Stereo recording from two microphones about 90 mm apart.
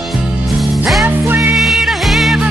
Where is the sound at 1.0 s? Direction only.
20° right (ahead or behind).